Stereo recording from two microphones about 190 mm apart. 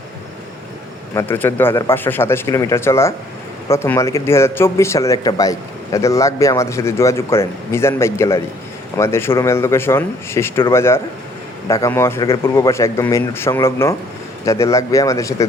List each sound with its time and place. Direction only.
1.1 s a man's voice: 10° left (ahead or behind)